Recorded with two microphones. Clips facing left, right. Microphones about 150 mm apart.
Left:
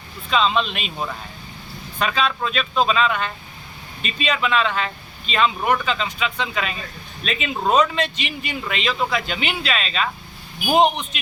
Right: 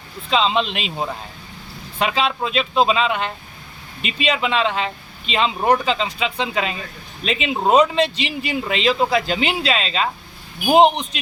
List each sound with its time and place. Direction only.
0.3 s speech: 25° right (ahead or behind)